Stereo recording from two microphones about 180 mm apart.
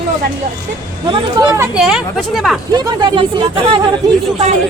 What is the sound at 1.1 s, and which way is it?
Speech, 20° right (ahead or behind).